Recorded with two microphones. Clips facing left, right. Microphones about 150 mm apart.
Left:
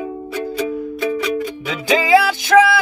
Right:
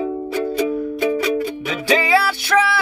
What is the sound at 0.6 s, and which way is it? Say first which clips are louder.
Music: right 2 dB; 35° right (ahead or behind).